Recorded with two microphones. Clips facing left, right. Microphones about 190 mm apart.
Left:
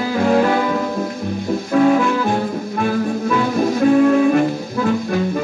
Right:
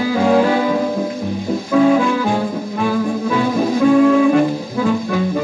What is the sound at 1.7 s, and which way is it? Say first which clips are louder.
Music: right 1 dB; 50° left (ahead or behind).